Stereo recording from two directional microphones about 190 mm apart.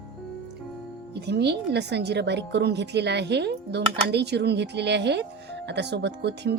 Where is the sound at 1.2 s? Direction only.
60° right (ahead or behind).